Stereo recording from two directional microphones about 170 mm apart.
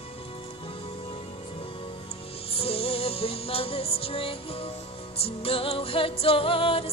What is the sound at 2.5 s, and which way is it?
Music, 35° left (ahead or behind).